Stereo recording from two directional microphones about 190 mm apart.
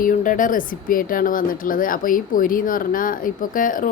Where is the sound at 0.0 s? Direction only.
45° left (ahead or behind).